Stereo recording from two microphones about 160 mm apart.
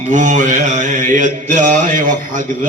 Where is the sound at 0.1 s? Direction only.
50° right (ahead or behind).